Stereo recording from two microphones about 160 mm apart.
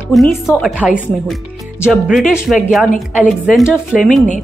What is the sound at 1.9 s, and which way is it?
A woman's voice, centre (ahead or behind).